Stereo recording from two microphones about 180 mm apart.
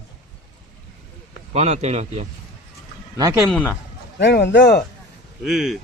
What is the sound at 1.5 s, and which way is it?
Speech, 35° right (ahead or behind).